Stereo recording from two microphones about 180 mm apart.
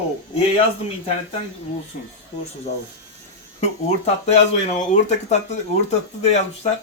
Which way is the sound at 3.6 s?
35° left (ahead or behind).